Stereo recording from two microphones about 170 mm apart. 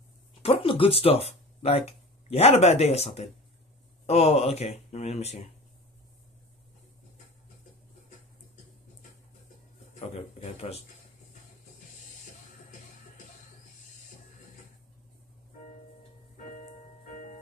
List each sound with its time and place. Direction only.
0.4 s speech: 35° left (ahead or behind)
9.9 s a man's voice: 35° left (ahead or behind)
17.0 s music: 45° left (ahead or behind)